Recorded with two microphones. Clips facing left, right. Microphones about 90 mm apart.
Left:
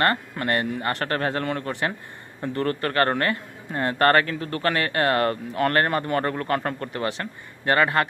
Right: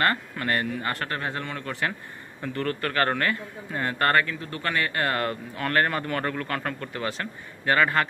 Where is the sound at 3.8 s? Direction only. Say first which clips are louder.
Left 4 dB; 45° left (ahead or behind).